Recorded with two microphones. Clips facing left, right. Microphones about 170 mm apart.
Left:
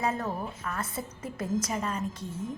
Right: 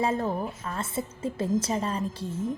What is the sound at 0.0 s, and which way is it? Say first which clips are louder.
A woman's voice: right 4 dB; 30° right (ahead or behind).